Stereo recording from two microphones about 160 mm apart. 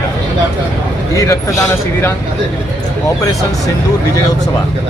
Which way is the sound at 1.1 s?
20° left (ahead or behind).